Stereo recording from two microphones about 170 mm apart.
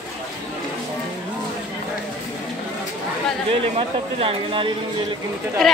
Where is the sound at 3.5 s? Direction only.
35° right (ahead or behind).